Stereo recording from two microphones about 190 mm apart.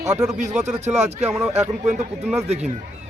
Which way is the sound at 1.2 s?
5° right (ahead or behind).